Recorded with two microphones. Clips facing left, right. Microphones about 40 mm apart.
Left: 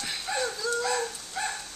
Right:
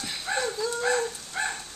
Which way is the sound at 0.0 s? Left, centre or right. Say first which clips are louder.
Even; centre.